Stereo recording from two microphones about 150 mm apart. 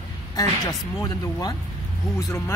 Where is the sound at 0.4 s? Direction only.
25° left (ahead or behind).